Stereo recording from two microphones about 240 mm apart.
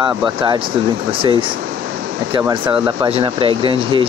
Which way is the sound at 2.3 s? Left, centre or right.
Centre.